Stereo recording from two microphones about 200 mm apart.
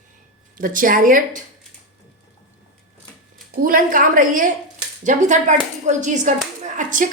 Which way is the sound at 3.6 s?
45° right (ahead or behind).